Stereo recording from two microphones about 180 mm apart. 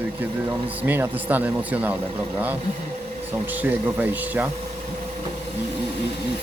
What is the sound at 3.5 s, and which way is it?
Speech, 10° right (ahead or behind).